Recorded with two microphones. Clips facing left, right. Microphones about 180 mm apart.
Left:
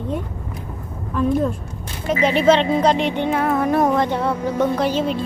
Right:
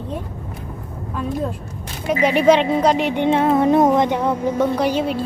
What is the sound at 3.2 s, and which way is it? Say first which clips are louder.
Speech: right 6 dB; 25° right (ahead or behind).